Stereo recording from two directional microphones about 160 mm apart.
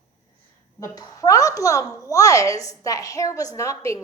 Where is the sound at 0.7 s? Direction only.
20° left (ahead or behind).